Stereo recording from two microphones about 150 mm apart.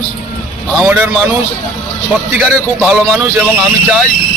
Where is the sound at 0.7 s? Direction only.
5° right (ahead or behind).